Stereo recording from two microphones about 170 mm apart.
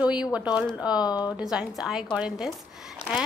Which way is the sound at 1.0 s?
25° left (ahead or behind).